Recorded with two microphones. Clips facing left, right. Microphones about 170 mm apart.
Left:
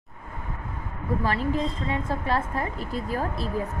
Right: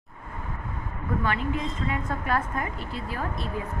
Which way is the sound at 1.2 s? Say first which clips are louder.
Left 3 dB; 35° left (ahead or behind).